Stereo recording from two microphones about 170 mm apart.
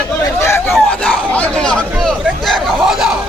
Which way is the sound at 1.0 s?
5° left (ahead or behind).